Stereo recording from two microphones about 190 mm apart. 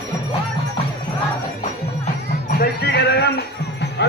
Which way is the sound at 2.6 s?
60° left (ahead or behind).